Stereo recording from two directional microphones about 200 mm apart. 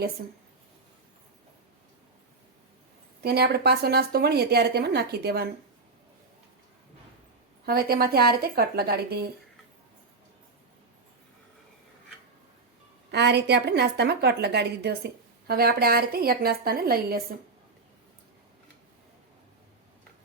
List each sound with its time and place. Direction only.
0.2 s a woman's voice: 50° right (ahead or behind)
3.2 s a woman's voice: 55° right (ahead or behind)
7.6 s a woman's voice: 50° right (ahead or behind)
13.1 s a woman's voice: 60° right (ahead or behind)